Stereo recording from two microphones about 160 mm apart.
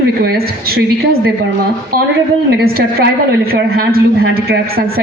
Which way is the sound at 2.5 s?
75° right (ahead or behind).